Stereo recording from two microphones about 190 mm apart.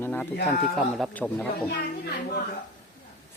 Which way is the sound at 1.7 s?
55° left (ahead or behind).